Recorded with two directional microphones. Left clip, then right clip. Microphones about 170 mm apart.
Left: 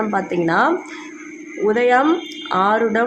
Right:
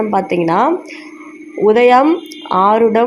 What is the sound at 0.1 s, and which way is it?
Speech, 20° right (ahead or behind).